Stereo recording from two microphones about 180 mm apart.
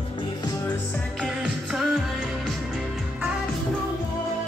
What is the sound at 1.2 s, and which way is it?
Music, centre (ahead or behind).